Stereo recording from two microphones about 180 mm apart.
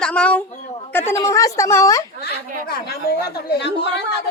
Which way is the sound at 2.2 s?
60° left (ahead or behind).